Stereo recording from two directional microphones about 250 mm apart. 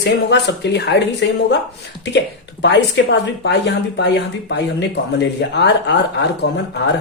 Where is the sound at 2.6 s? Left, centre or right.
Left.